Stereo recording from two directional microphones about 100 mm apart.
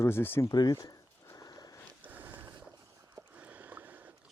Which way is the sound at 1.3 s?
40° left (ahead or behind).